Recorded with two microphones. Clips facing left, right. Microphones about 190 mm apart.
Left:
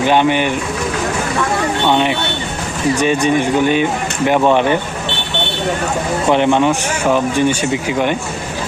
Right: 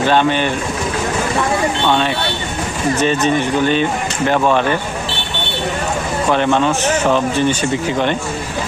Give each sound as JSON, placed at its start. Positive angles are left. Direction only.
{"t": 0.0, "sound": "speech", "side_deg": 15}
{"t": 1.9, "sound": "speech", "side_deg": 15}
{"t": 6.2, "sound": "speech", "side_deg": 20}